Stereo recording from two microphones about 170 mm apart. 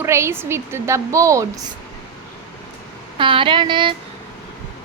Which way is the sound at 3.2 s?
30° right (ahead or behind).